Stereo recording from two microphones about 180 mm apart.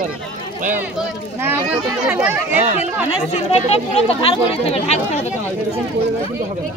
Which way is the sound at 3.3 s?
35° left (ahead or behind).